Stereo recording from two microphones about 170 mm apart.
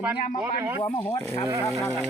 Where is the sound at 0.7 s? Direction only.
25° left (ahead or behind).